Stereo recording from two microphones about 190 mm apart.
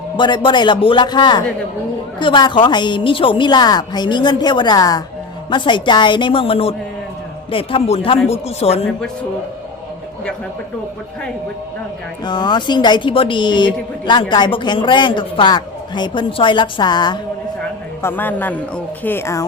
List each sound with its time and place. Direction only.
0.2 s speech: 25° left (ahead or behind)
12.2 s speech: 25° left (ahead or behind)
18.0 s speech: 10° left (ahead or behind)